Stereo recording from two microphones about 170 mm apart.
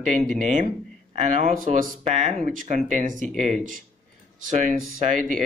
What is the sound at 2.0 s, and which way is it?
Speech, 40° right (ahead or behind).